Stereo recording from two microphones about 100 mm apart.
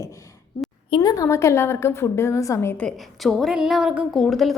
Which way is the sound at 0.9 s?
50° left (ahead or behind).